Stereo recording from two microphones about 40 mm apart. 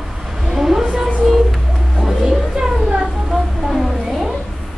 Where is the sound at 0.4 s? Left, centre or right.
Centre.